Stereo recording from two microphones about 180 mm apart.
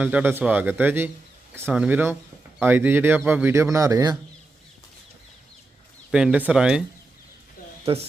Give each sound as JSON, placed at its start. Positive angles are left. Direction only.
{"t": 0.0, "sound": "speech", "side_deg": -10}
{"t": 6.1, "sound": "speech", "side_deg": -5}